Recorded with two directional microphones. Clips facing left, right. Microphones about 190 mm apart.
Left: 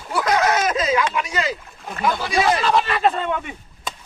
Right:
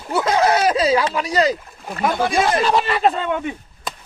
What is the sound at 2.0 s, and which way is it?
Speech, 50° right (ahead or behind).